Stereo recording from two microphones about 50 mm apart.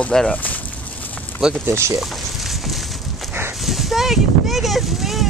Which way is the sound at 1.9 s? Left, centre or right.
Centre.